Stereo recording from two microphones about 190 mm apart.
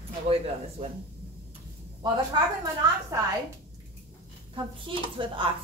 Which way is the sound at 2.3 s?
25° right (ahead or behind).